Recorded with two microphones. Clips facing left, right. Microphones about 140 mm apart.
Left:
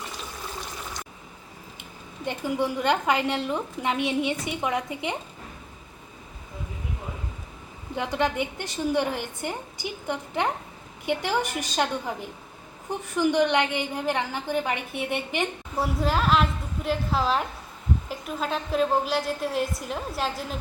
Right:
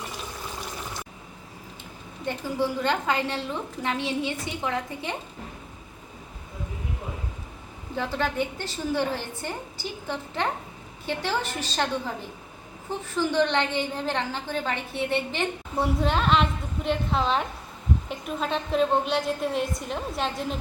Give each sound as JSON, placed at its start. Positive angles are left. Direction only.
{"t": 2.2, "sound": "a woman's voice", "side_deg": 15}
{"t": 7.9, "sound": "a woman's voice", "side_deg": 15}
{"t": 13.1, "sound": "a woman's voice", "side_deg": 15}
{"t": 15.8, "sound": "a woman's voice", "side_deg": 5}